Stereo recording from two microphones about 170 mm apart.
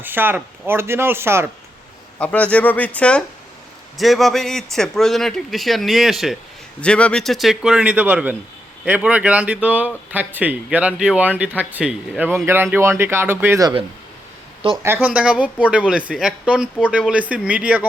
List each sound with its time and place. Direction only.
0.0 s speech: 10° right (ahead or behind)
2.1 s a man's voice: 10° left (ahead or behind); by 13.7 s 20° right (ahead or behind)
14.6 s speech: 35° right (ahead or behind)
15.0 s speech: 5° right (ahead or behind)